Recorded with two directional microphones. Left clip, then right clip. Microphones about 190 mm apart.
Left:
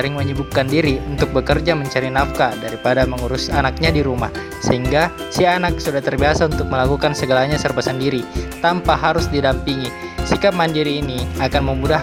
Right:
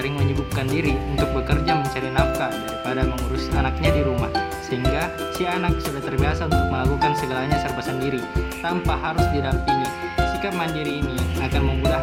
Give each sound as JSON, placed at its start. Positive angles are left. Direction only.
{"t": 0.8, "sound": "speech", "side_deg": 35}